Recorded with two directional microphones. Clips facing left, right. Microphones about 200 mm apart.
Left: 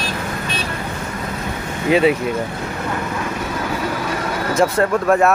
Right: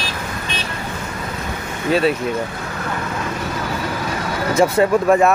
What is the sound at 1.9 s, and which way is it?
Speech, 15° left (ahead or behind).